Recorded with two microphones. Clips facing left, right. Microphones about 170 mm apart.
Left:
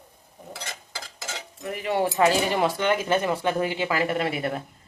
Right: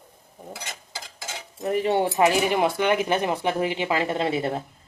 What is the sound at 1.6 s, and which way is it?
Speech, 30° right (ahead or behind).